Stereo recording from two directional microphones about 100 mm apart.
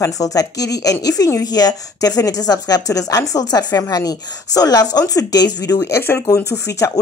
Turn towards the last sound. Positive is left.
turn(degrees=30)  # may be behind; listen again after turning